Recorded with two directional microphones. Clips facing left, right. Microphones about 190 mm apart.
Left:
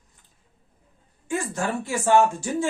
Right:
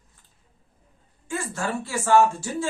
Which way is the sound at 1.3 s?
15° left (ahead or behind).